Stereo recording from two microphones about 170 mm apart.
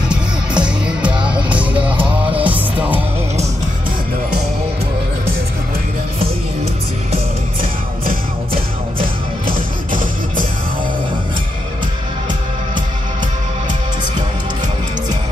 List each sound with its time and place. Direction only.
0.1 s music: 5° right (ahead or behind)
2.0 s music: 30° right (ahead or behind)
2.4 s music: 10° right (ahead or behind)